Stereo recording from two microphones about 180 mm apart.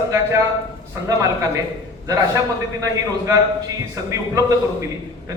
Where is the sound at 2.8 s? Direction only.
20° right (ahead or behind).